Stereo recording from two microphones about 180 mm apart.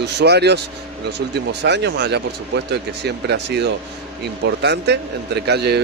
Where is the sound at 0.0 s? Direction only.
70° right (ahead or behind).